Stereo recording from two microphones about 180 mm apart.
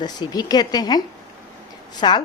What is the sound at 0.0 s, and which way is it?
A woman's voice, 20° left (ahead or behind).